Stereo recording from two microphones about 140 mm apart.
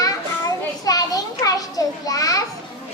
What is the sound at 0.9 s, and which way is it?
Children playing, 25° left (ahead or behind).